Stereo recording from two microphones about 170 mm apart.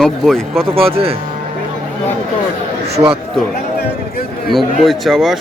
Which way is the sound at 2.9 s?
35° right (ahead or behind).